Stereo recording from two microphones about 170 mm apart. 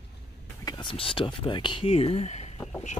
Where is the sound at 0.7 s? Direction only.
30° left (ahead or behind).